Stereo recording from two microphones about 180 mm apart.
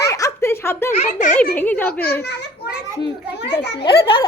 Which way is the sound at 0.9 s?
40° left (ahead or behind).